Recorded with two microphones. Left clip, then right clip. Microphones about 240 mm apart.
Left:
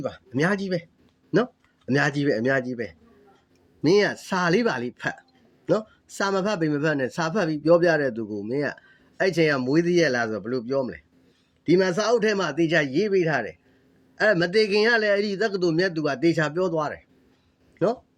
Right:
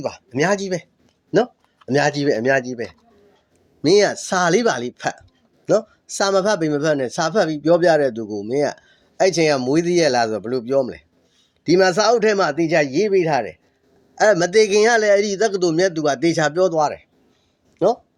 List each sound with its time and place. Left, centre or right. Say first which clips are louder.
0.5 s speech: right 5 dB; right
1.9 s a man's voice: right 5 dB; centre
3.8 s a man's voice: right 5 dB; centre
13.0 s a man's voice: right 5 dB; centre